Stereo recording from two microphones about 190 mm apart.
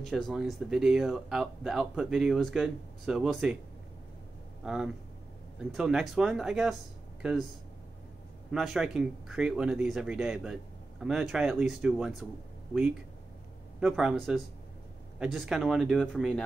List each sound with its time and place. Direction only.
0.1 s speech: centre (ahead or behind)
4.6 s speech: 5° right (ahead or behind)
8.5 s speech: centre (ahead or behind)
13.7 s speech: 5° right (ahead or behind)